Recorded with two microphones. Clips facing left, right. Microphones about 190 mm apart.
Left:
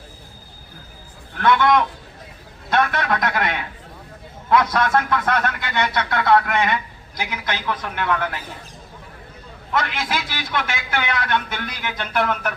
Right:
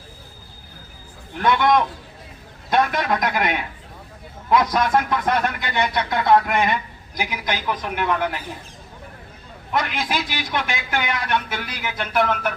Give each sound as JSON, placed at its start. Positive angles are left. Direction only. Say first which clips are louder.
{"t": 1.4, "sound": "a man's voice", "louder": "left 1 dB", "side_deg": -15}
{"t": 9.7, "sound": "a man's voice", "louder": "even", "side_deg": -15}